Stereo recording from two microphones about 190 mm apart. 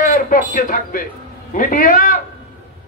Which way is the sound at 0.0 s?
45° left (ahead or behind).